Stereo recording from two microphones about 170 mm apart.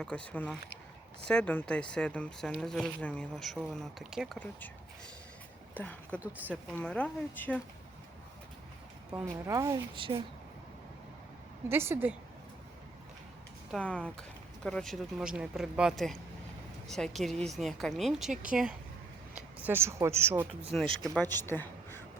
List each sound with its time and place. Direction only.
0.0 s speech: 5° left (ahead or behind)
5.7 s speech: 10° left (ahead or behind)
9.5 s speech: 20° right (ahead or behind)
9.9 s speech: 30° right (ahead or behind)
11.7 s speech: 15° right (ahead or behind)
13.7 s speech: 5° left (ahead or behind)
19.6 s speech: 15° right (ahead or behind)
20.7 s speech: 5° left (ahead or behind)